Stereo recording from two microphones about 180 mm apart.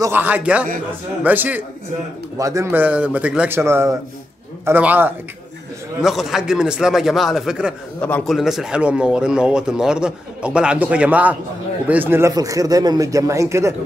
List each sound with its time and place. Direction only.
0.0 s a man's voice: 10° right (ahead or behind)